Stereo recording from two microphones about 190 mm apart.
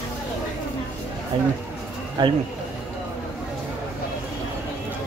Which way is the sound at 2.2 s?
25° right (ahead or behind).